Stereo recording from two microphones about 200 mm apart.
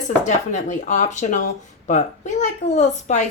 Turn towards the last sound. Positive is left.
turn(degrees=35)  # may be behind; listen again after turning